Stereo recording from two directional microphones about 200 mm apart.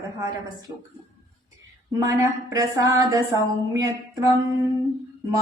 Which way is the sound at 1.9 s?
15° right (ahead or behind).